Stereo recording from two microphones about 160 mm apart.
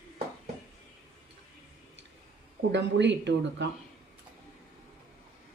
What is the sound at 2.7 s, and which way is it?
Speech, 90° right.